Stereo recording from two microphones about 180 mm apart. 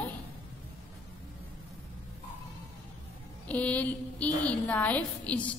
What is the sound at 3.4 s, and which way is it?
A woman's voice, 10° left (ahead or behind).